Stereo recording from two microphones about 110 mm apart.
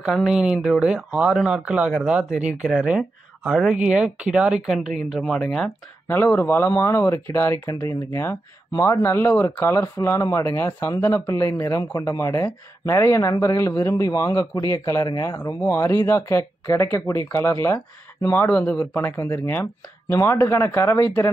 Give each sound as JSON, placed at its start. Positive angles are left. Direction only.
{"t": 0.1, "sound": "speech", "side_deg": -5}
{"t": 6.0, "sound": "speech", "side_deg": 20}